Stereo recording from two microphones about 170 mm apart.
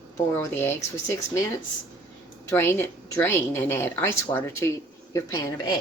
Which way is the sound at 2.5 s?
15° left (ahead or behind).